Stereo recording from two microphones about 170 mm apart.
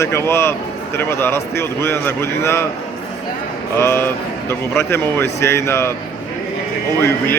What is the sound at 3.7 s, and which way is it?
Speech, 15° left (ahead or behind).